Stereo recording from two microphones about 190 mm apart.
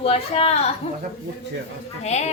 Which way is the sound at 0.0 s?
30° left (ahead or behind).